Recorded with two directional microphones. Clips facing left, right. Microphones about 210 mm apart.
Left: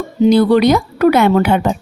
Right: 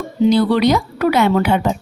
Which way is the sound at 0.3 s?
50° left (ahead or behind).